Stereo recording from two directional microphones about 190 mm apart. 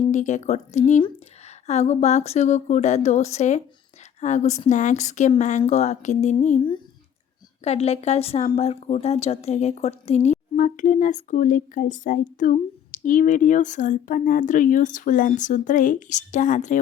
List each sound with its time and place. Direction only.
0.1 s speech: 40° left (ahead or behind)
7.6 s speech: 35° left (ahead or behind)